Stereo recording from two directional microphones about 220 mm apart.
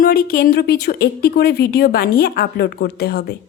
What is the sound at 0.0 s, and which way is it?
Speech, 45° left (ahead or behind).